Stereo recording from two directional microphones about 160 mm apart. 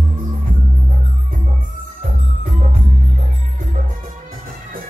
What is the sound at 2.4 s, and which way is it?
Music, 50° right (ahead or behind).